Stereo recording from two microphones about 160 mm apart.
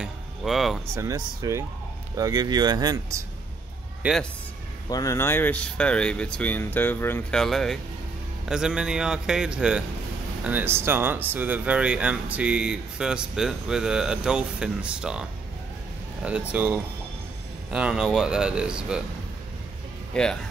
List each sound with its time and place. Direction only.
0.0 s music: centre (ahead or behind)
0.9 s speech: 20° right (ahead or behind)
4.0 s speech: 10° right (ahead or behind)
4.8 s a man's voice: 20° left (ahead or behind); by 19.0 s 5° right (ahead or behind)